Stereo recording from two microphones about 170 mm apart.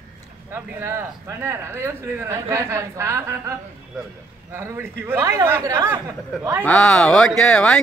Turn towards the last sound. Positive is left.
turn(degrees=5)  # may be behind; listen again after turning